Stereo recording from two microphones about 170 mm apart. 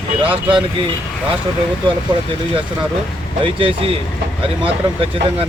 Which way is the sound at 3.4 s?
30° right (ahead or behind).